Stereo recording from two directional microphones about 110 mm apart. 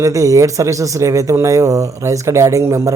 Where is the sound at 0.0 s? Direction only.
30° right (ahead or behind).